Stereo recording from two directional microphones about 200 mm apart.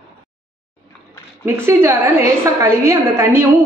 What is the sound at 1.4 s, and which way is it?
A woman's voice, 10° right (ahead or behind).